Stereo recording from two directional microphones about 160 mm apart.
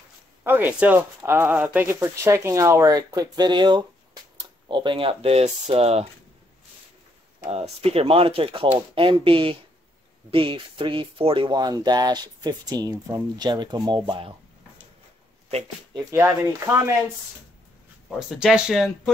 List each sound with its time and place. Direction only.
0.4 s speech: 10° right (ahead or behind); by 6.0 s 40° right (ahead or behind)
7.4 s speech: 40° right (ahead or behind)
16.1 s speech: 20° right (ahead or behind)
18.3 s speech: 5° right (ahead or behind)